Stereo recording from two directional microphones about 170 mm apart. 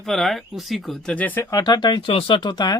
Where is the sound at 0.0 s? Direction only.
Centre (ahead or behind).